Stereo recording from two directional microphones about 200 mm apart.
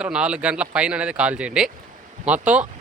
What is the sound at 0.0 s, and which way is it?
Speech, 5° right (ahead or behind).